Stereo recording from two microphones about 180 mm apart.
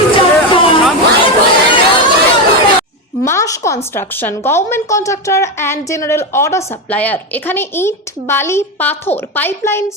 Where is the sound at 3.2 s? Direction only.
15° left (ahead or behind).